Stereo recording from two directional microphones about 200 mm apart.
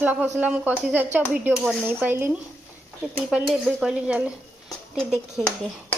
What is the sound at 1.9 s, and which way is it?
Frying, 10° right (ahead or behind).